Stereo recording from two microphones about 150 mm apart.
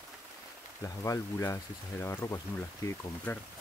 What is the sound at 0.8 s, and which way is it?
Speech, 20° left (ahead or behind).